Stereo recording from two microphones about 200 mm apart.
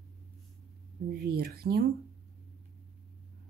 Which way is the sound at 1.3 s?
50° right (ahead or behind).